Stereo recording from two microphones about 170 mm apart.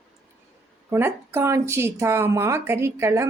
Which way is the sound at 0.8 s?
15° right (ahead or behind).